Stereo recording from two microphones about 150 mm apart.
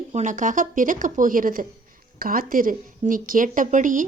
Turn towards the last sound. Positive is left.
turn(degrees=-60)  # may be behind; listen again after turning